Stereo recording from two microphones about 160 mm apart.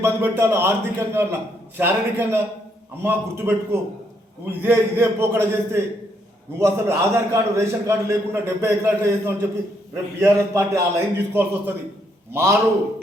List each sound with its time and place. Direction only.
0.0 s a man's voice: 15° right (ahead or behind)